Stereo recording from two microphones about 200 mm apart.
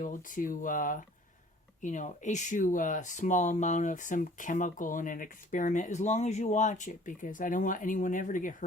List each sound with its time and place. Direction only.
0.0 s speech: 40° left (ahead or behind)